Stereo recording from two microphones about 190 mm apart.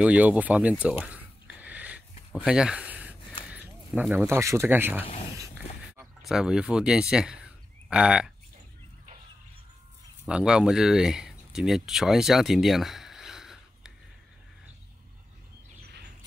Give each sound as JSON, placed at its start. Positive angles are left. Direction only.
{"t": 0.0, "sound": "speech", "side_deg": -5}
{"t": 0.8, "sound": "a sound", "side_deg": -5}
{"t": 2.4, "sound": "speech", "side_deg": -5}
{"t": 5.0, "sound": "speech", "side_deg": 30}
{"t": 5.4, "sound": "a sound", "side_deg": -15}
{"t": 6.2, "sound": "speech", "side_deg": -5}
{"t": 10.2, "sound": "speech", "side_deg": -5}